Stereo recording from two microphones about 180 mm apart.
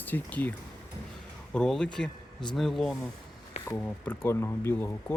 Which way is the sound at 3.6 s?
10° left (ahead or behind).